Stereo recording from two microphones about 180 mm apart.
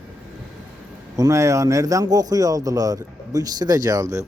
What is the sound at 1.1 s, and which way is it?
Speech, 15° right (ahead or behind).